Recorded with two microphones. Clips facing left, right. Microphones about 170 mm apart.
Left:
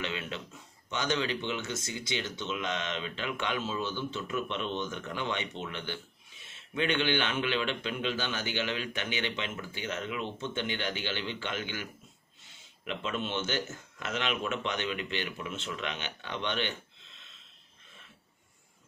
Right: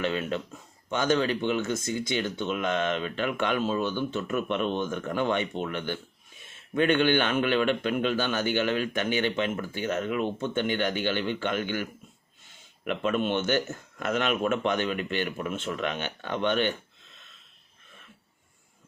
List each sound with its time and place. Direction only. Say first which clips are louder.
0.0 s a man's voice: right 8 dB; 45° right (ahead or behind)